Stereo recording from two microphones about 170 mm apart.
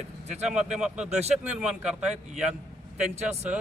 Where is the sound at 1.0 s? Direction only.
40° right (ahead or behind).